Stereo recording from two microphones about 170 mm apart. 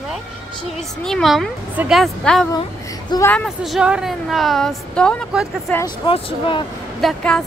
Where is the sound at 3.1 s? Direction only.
25° left (ahead or behind).